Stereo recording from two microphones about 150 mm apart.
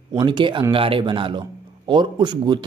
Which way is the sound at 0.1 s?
30° right (ahead or behind).